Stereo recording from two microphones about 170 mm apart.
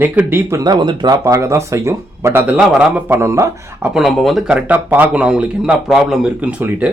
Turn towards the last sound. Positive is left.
turn(degrees=-10)  # may be behind; listen again after turning